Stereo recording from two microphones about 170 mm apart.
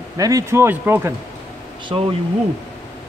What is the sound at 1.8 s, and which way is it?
Speech, 30° right (ahead or behind).